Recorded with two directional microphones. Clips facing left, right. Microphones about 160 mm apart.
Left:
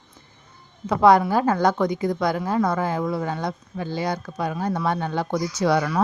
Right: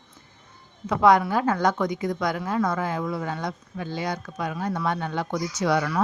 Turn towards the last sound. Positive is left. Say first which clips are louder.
# left 3 dB
turn(degrees=35)  # may be behind; listen again after turning